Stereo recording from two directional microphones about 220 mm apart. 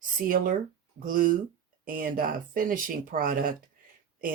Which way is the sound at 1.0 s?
40° right (ahead or behind).